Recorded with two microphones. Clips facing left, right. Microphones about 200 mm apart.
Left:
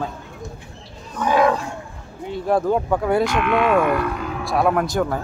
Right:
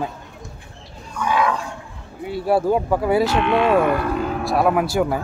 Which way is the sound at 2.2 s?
5° right (ahead or behind).